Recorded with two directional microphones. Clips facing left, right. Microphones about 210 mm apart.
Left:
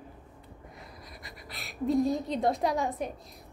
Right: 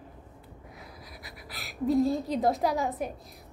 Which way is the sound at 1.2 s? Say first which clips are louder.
Right 1 dB; centre (ahead or behind).